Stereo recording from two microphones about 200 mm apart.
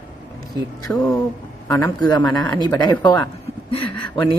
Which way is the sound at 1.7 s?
15° left (ahead or behind).